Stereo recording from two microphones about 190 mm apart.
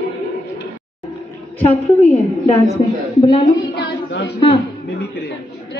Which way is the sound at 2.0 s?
30° left (ahead or behind).